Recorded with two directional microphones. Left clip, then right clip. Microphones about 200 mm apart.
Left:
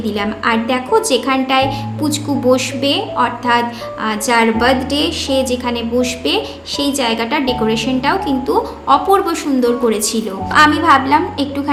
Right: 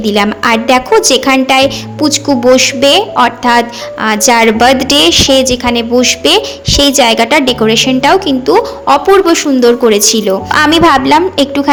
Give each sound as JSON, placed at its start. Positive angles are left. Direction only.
{"t": 0.0, "sound": "a woman's voice", "side_deg": -40}